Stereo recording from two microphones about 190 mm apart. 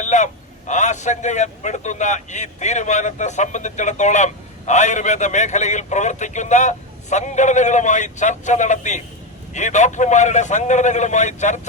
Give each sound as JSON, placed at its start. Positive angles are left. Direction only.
{"t": 0.0, "sound": "a man's voice", "side_deg": 40}